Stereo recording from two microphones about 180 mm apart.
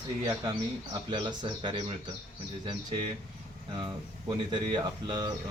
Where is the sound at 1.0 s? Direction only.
25° right (ahead or behind).